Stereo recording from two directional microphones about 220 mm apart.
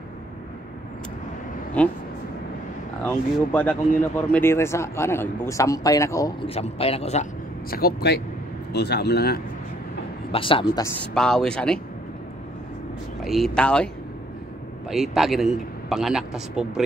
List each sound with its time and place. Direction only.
1.8 s speech: 5° left (ahead or behind)
3.1 s speech: 5° left (ahead or behind)
6.4 s a man's voice: 25° left (ahead or behind)
7.7 s speech: 45° left (ahead or behind)
10.3 s a man's voice: 25° left (ahead or behind)
11.0 s a man's voice: 5° left (ahead or behind)
13.2 s a man's voice: centre (ahead or behind)
14.9 s a man's voice: centre (ahead or behind)